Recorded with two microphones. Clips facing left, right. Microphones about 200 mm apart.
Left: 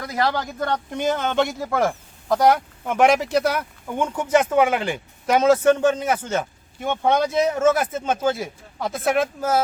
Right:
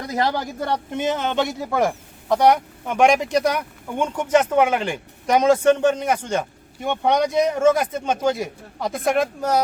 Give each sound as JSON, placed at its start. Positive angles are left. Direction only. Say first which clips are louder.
{"t": 0.0, "sound": "a man's voice", "louder": "right 1 dB", "side_deg": -20}
{"t": 0.6, "sound": "speech", "louder": "even", "side_deg": -5}
{"t": 5.7, "sound": "speech", "louder": "even", "side_deg": -10}
{"t": 6.2, "sound": "speech", "louder": "right 1 dB", "side_deg": 5}